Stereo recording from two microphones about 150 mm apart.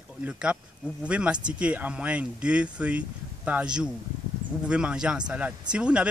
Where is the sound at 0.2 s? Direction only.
5° right (ahead or behind).